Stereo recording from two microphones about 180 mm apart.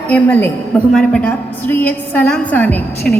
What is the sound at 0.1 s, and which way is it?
A woman's voice, 10° left (ahead or behind).